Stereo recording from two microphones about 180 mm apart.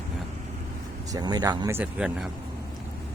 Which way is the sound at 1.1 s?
20° right (ahead or behind).